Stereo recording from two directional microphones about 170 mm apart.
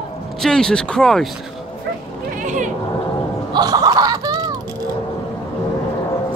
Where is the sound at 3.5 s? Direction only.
20° right (ahead or behind).